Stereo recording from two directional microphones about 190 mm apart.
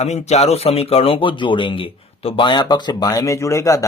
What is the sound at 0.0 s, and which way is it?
Speech, 35° left (ahead or behind).